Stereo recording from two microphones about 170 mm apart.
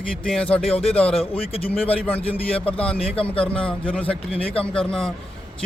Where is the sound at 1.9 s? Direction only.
10° left (ahead or behind).